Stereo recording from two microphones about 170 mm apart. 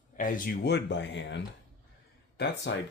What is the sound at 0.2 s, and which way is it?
Speech, 55° left (ahead or behind).